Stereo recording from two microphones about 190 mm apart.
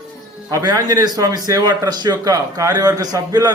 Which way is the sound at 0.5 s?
20° right (ahead or behind).